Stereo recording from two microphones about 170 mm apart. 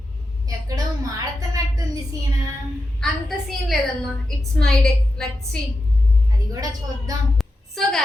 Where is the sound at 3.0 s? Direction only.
Centre (ahead or behind).